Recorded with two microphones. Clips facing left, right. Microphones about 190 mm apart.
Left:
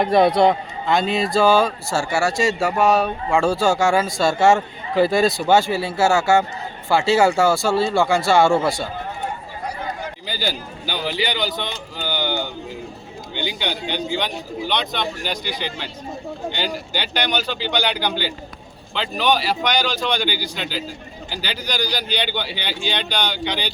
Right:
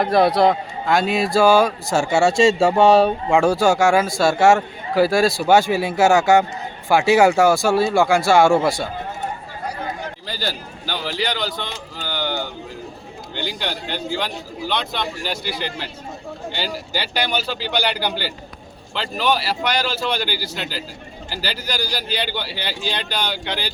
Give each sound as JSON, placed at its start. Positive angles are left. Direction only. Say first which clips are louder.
{"t": 0.0, "sound": "a man's voice", "louder": "even", "side_deg": 0}
{"t": 3.3, "sound": "a man's voice", "louder": "right 1 dB", "side_deg": -15}
{"t": 10.2, "sound": "a man's voice", "louder": "left 3 dB", "side_deg": 0}